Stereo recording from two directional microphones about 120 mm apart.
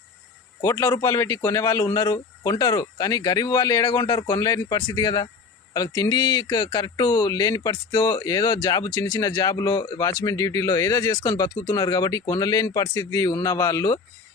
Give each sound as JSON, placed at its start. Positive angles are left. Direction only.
{"t": 0.6, "sound": "speech", "side_deg": 25}